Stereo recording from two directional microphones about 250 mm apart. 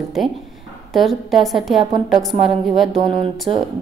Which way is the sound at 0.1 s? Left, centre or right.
Centre.